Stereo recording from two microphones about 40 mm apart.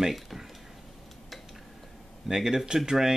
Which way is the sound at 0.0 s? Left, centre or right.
Centre.